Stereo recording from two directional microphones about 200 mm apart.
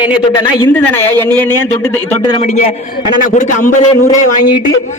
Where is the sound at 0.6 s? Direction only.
10° left (ahead or behind).